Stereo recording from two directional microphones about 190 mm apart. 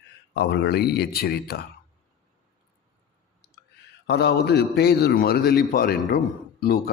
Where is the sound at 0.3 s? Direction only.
65° left (ahead or behind).